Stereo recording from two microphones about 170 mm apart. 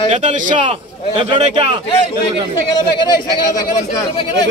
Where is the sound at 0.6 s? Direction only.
35° right (ahead or behind).